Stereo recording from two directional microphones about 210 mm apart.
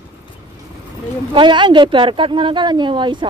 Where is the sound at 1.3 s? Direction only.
20° right (ahead or behind).